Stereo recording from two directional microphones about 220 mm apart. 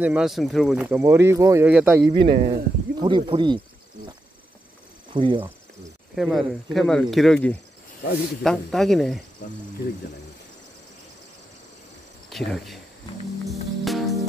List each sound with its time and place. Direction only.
0.0 s speech: 5° right (ahead or behind)
2.2 s speech: 35° right (ahead or behind)
3.0 s cricket: 20° right (ahead or behind)
5.1 s speech: 20° right (ahead or behind)
6.1 s speech: centre (ahead or behind)
12.3 s speech: centre (ahead or behind)
13.5 s music: centre (ahead or behind)